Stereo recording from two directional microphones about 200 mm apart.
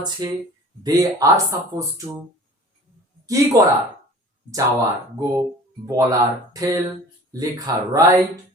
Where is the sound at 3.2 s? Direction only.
15° right (ahead or behind).